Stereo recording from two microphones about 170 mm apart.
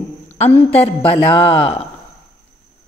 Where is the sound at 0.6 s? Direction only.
35° left (ahead or behind).